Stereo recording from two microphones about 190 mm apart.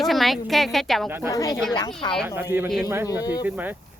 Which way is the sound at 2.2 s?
15° right (ahead or behind).